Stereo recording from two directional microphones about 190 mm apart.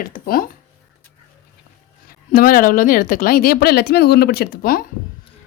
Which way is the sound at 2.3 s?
50° left (ahead or behind).